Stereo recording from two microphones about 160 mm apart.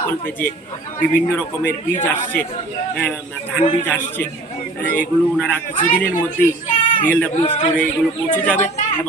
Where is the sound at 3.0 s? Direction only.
10° left (ahead or behind).